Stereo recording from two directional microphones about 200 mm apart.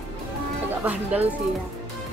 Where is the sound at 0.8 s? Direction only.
10° right (ahead or behind).